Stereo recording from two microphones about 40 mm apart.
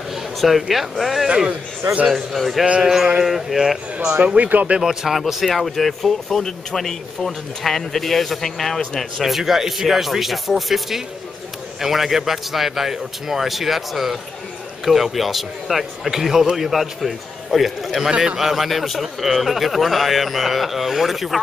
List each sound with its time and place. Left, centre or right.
0.4 s a man's voice: centre
1.2 s a man's voice: centre
2.0 s a man's voice: centre
4.4 s speech: right
4.8 s speech: centre
9.2 s a man's voice: centre
15.1 s a man's voice: centre